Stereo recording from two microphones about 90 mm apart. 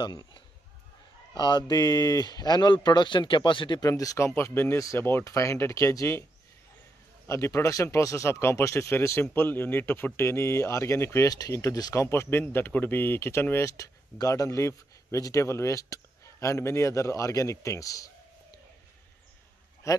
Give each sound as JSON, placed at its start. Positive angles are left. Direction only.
{"t": 0.0, "sound": "speech", "side_deg": 55}
{"t": 3.9, "sound": "speech", "side_deg": 40}
{"t": 4.4, "sound": "speech", "side_deg": 25}
{"t": 4.7, "sound": "speech", "side_deg": 35}
{"t": 7.2, "sound": "speech", "side_deg": 35}